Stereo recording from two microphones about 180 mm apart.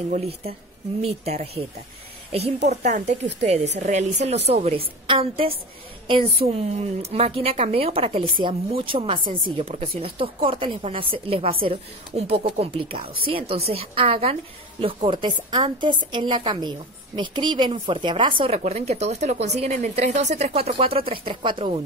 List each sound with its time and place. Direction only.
0.1 s a woman's voice: 35° right (ahead or behind)
2.7 s a woman's voice: 40° right (ahead or behind)